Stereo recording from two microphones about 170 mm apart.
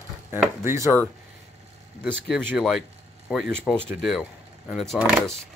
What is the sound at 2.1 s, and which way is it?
Speech, centre (ahead or behind).